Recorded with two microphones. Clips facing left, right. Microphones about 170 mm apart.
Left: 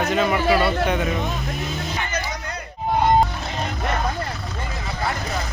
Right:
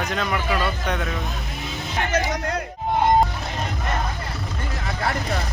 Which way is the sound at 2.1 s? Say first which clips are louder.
Right 5 dB; 90° right.